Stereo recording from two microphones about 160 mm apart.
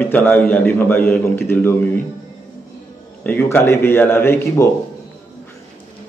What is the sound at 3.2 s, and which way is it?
A man's voice, 10° left (ahead or behind).